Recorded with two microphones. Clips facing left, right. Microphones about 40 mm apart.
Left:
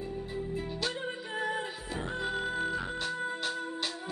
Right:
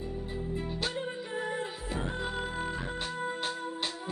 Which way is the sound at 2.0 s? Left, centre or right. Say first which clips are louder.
Left 1 dB; centre.